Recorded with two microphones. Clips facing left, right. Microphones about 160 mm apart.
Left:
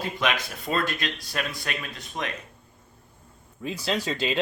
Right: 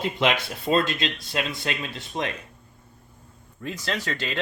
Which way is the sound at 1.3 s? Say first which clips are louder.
Right 3 dB; 25° right (ahead or behind).